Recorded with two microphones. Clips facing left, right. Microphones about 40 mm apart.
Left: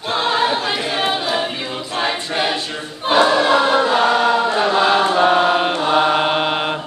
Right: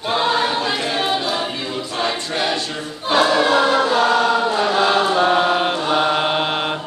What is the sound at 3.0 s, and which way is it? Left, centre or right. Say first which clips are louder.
Choir: left 2 dB; left.